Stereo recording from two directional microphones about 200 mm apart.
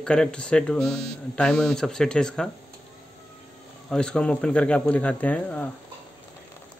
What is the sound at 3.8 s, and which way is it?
Speech, 5° left (ahead or behind).